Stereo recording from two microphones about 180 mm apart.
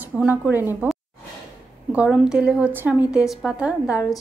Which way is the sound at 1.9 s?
5° right (ahead or behind).